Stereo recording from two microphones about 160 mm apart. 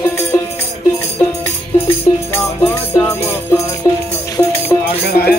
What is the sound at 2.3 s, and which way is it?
Music, 15° left (ahead or behind).